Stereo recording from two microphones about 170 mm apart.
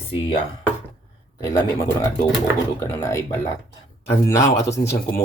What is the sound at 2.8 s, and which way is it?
Speech, 20° left (ahead or behind).